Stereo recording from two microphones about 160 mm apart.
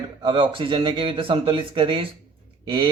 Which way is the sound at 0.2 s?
30° right (ahead or behind).